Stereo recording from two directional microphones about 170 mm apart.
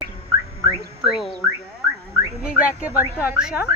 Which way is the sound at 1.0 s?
Centre (ahead or behind).